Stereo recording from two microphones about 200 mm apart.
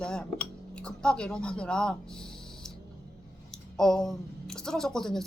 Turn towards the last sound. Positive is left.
turn(degrees=0)  # may be behind; listen again after turning